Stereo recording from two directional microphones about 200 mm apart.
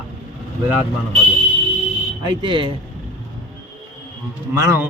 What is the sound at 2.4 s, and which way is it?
Speech, 25° right (ahead or behind).